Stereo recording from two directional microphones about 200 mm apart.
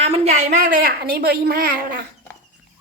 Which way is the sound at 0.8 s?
50° right (ahead or behind).